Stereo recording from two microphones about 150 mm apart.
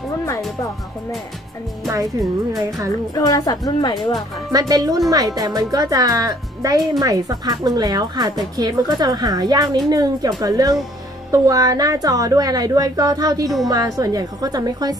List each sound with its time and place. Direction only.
1.9 s a woman's voice: 20° right (ahead or behind)
3.2 s a woman's voice: 25° left (ahead or behind)
4.5 s a woman's voice: 25° right (ahead or behind)